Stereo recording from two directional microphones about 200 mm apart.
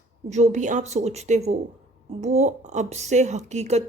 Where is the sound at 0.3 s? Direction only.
35° right (ahead or behind).